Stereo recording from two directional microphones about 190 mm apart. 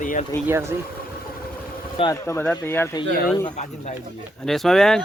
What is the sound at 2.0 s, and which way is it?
Speech, 15° left (ahead or behind).